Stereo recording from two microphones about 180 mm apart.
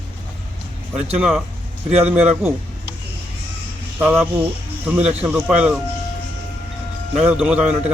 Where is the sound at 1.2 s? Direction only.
5° right (ahead or behind).